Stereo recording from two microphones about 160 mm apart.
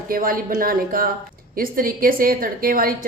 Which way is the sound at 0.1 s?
60° right (ahead or behind).